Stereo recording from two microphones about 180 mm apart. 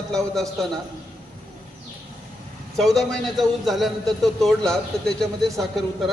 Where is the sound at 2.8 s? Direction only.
Centre (ahead or behind).